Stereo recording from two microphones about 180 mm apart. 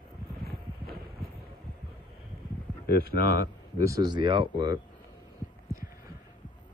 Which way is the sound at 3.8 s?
20° right (ahead or behind).